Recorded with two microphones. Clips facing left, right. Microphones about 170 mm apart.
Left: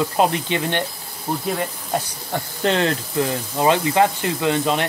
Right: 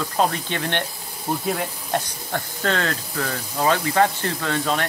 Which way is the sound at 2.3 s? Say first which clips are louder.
Left 3 dB; 20° left (ahead or behind).